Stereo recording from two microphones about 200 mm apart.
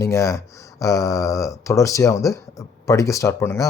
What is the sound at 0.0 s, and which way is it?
Speech, 15° left (ahead or behind).